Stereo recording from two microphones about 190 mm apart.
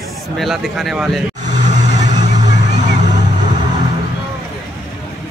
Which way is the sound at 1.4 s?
40° right (ahead or behind).